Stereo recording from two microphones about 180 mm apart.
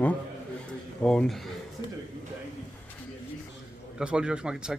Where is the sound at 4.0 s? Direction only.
5° right (ahead or behind).